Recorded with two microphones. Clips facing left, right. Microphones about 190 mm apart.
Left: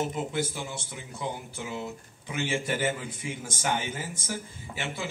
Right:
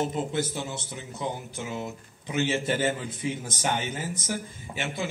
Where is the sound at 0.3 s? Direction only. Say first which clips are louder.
Right 2 dB; 20° right (ahead or behind).